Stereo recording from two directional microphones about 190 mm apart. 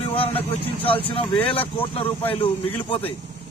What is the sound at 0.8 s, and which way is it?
Speech, 30° left (ahead or behind).